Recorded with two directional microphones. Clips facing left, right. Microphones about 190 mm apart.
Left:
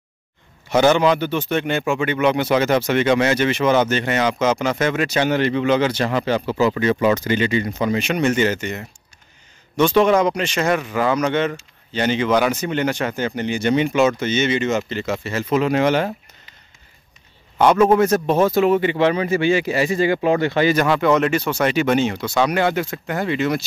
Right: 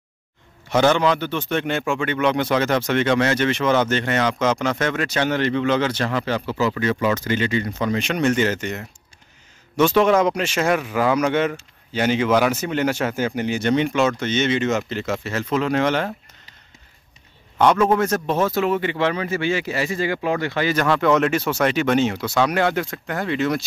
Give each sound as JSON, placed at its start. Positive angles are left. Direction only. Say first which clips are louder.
{"t": 0.7, "sound": "a man's voice", "louder": "left 2 dB", "side_deg": 5}
{"t": 17.6, "sound": "a man's voice", "louder": "left 3 dB", "side_deg": 10}
{"t": 20.7, "sound": "speech", "louder": "left 1 dB", "side_deg": 10}